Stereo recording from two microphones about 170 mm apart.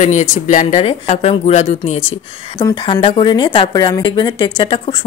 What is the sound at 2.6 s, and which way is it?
Speech, 30° left (ahead or behind).